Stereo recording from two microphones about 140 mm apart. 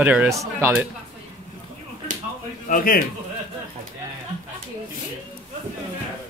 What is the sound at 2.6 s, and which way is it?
Speech, 85° left.